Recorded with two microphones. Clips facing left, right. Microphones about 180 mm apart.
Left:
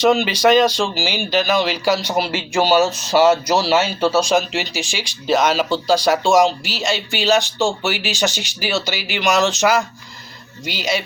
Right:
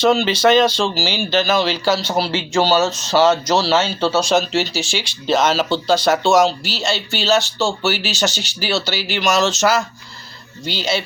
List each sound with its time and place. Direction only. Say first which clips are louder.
0.3 s speech: even; 10° left (ahead or behind)
4.7 s speech: right 2 dB; 35° right (ahead or behind)
4.9 s speech: even; 10° left (ahead or behind)